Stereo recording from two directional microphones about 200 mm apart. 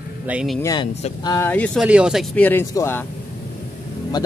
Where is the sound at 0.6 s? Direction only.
20° left (ahead or behind).